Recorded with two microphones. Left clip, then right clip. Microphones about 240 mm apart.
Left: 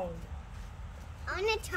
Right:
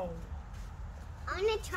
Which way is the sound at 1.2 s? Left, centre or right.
Left.